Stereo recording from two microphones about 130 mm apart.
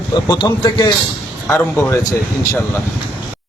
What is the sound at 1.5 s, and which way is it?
Speech, 20° left (ahead or behind).